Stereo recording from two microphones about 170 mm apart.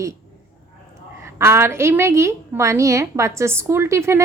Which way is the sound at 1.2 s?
15° right (ahead or behind).